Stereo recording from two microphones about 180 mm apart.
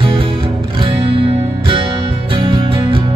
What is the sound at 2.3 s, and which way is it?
Music, 30° right (ahead or behind).